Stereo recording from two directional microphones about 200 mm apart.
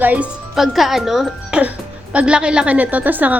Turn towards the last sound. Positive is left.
turn(degrees=-10)  # may be behind; listen again after turning